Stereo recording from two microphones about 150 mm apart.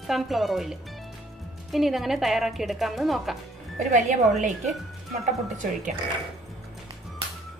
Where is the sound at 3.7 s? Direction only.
55° right (ahead or behind).